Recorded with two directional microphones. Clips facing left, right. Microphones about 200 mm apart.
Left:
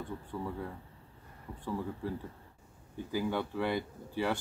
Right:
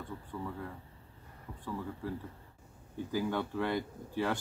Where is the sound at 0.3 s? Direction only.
20° left (ahead or behind).